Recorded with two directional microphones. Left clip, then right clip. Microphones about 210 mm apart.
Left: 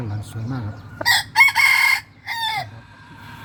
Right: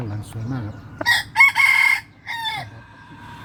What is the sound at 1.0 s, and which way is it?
Chicken, 60° left (ahead or behind).